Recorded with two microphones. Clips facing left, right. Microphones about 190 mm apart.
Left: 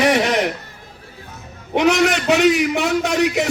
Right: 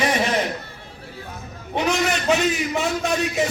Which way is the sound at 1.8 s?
70° left (ahead or behind).